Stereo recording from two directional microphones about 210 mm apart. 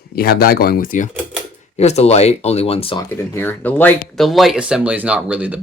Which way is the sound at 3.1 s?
10° left (ahead or behind).